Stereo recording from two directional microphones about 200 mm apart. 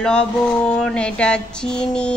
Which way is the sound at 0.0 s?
5° left (ahead or behind).